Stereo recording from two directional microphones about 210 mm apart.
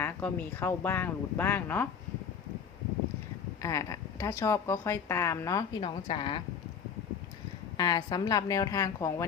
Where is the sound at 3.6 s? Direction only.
15° left (ahead or behind).